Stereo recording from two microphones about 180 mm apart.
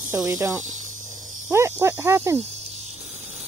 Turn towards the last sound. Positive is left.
turn(degrees=-35)  # may be behind; listen again after turning